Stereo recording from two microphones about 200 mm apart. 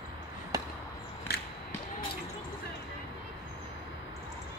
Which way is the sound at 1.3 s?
50° left (ahead or behind).